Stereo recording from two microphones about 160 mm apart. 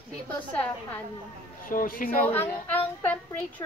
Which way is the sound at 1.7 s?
60° left (ahead or behind).